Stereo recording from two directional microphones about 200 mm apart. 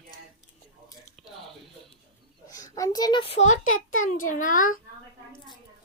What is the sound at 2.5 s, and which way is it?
A child's voice, 15° left (ahead or behind).